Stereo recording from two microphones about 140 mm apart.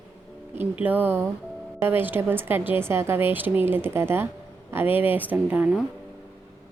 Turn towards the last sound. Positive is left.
turn(degrees=-10)  # may be behind; listen again after turning